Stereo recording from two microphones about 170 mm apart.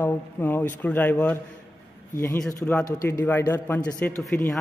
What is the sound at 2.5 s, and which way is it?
Speech, 20° left (ahead or behind).